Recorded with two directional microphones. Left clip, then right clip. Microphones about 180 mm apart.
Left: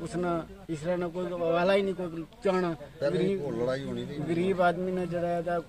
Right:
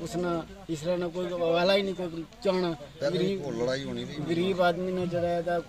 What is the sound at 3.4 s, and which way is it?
Speech, 25° left (ahead or behind).